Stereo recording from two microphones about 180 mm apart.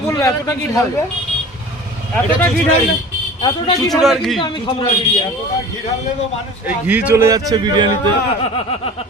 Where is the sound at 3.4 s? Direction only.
20° left (ahead or behind).